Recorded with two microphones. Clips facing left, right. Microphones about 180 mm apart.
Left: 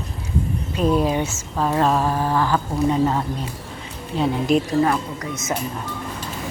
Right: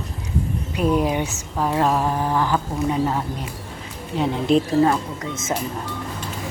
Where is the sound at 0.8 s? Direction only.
15° right (ahead or behind).